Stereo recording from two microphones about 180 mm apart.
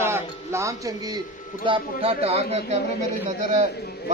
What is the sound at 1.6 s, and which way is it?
Speech, 30° right (ahead or behind).